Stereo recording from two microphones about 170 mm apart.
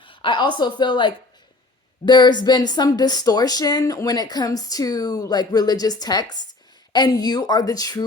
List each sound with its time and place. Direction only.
0.0 s a woman's voice: 30° left (ahead or behind)